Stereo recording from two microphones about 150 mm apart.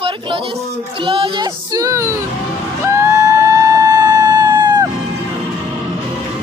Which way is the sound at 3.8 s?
25° right (ahead or behind).